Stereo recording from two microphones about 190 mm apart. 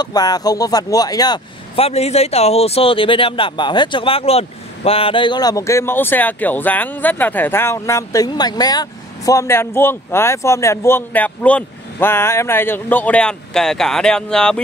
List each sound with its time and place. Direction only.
0.0 s speech: 20° left (ahead or behind); by 14.6 s 5° left (ahead or behind)